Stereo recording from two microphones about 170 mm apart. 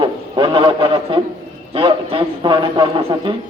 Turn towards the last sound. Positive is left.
turn(degrees=-30)  # may be behind; listen again after turning